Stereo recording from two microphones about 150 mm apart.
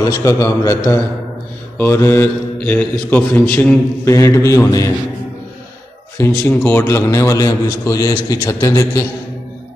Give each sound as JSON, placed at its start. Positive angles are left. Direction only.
{"t": 0.0, "sound": "a man's voice", "side_deg": 20}
{"t": 6.1, "sound": "a man's voice", "side_deg": 15}